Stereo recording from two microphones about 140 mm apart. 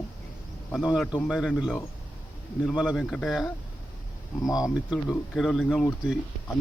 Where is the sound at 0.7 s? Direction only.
5° right (ahead or behind).